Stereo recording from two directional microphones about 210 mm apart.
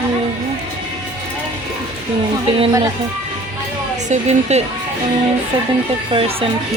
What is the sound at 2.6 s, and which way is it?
Speech, 15° right (ahead or behind).